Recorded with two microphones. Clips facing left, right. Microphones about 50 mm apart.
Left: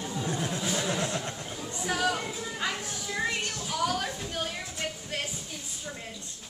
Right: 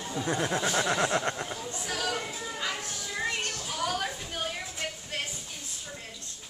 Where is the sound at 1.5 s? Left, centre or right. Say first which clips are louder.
Left 3 dB; centre.